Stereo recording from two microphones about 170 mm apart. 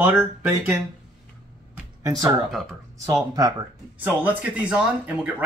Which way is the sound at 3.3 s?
20° right (ahead or behind).